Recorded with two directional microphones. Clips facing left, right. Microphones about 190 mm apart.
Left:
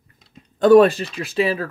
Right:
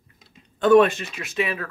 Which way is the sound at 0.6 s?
35° left (ahead or behind).